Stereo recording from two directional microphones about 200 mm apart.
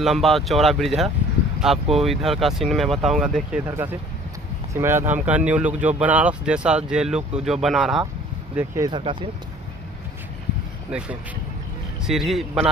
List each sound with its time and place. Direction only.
0.0 s speech: centre (ahead or behind)
8.5 s speech: 15° right (ahead or behind)
10.9 s speech: 5° right (ahead or behind)